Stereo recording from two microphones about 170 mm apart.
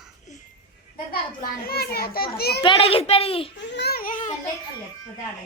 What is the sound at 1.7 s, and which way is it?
Speech, 65° left (ahead or behind).